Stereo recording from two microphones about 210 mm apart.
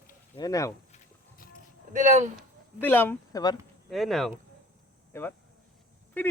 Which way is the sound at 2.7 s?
10° left (ahead or behind).